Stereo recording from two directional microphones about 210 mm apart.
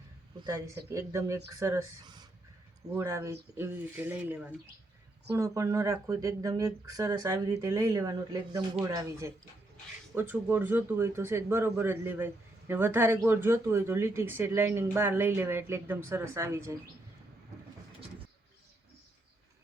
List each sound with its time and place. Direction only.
0.4 s a man's voice: 15° right (ahead or behind)